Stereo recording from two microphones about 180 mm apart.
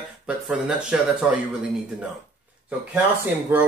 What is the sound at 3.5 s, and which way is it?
Speech, 10° right (ahead or behind).